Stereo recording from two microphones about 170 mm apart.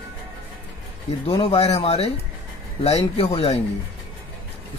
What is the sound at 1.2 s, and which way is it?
A man's voice, 35° left (ahead or behind).